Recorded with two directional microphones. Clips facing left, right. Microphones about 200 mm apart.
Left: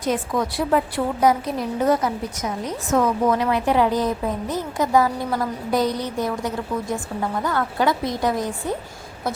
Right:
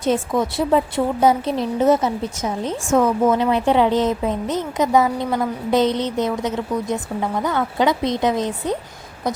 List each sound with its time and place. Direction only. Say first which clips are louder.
0.0 s a woman's voice: right 3 dB; 25° right (ahead or behind)